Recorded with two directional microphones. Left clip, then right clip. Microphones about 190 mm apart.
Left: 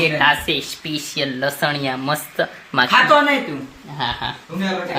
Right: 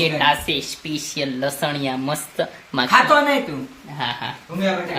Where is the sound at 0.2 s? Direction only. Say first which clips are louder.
Left 2 dB; 5° right (ahead or behind).